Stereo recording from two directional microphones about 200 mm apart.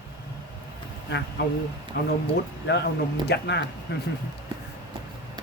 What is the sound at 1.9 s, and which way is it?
Speech, 60° left (ahead or behind).